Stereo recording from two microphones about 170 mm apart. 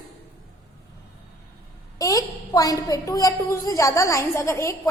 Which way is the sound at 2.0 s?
20° left (ahead or behind).